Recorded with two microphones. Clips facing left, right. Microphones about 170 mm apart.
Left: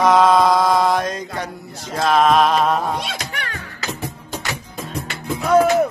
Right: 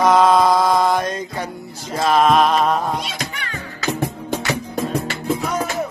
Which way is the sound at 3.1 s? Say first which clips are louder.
Even; 65° left (ahead or behind).